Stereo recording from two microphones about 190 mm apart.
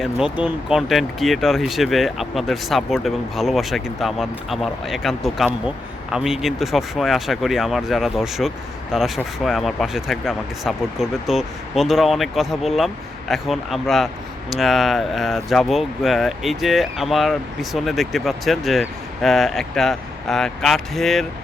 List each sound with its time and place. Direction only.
0.0 s speech: 5° right (ahead or behind)